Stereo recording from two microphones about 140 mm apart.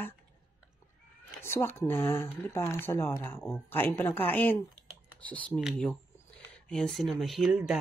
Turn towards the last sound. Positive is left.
turn(degrees=-5)  # may be behind; listen again after turning